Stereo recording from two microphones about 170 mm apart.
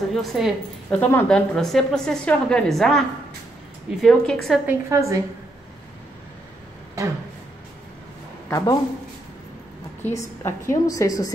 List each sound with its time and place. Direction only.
0.1 s a woman's voice: centre (ahead or behind)
4.6 s a woman's voice: 15° right (ahead or behind)
7.0 s a sound: 20° right (ahead or behind)
8.5 s a woman's voice: 20° left (ahead or behind)
10.0 s a woman's voice: 15° left (ahead or behind)